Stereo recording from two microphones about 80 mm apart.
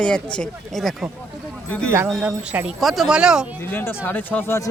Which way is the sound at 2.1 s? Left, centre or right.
Centre.